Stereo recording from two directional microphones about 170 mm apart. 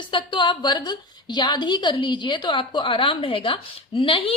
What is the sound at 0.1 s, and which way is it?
A woman's voice, 30° left (ahead or behind).